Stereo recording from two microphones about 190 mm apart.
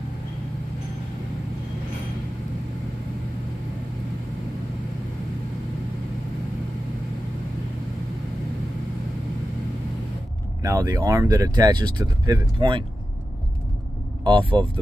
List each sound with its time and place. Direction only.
10.6 s speech: 15° right (ahead or behind)
14.2 s speech: 25° right (ahead or behind)